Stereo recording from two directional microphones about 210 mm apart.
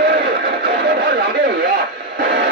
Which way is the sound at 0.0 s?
50° right (ahead or behind).